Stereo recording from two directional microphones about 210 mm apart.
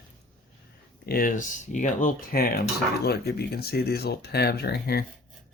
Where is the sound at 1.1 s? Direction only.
40° left (ahead or behind).